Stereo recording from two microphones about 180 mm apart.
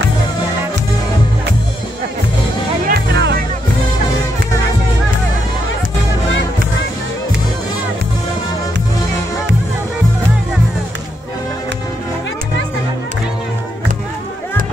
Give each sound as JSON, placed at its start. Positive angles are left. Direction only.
{"t": 2.9, "sound": "music", "side_deg": -70}